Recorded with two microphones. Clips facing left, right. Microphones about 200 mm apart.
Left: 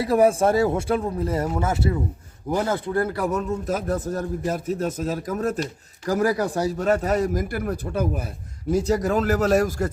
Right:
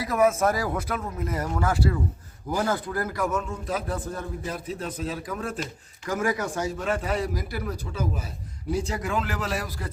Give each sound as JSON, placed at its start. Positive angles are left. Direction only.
{"t": 0.0, "sound": "a man's voice", "side_deg": 30}
{"t": 8.7, "sound": "a man's voice", "side_deg": 40}